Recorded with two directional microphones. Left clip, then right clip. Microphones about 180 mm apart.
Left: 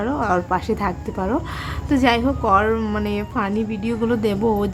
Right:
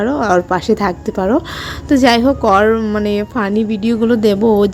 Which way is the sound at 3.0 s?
30° right (ahead or behind).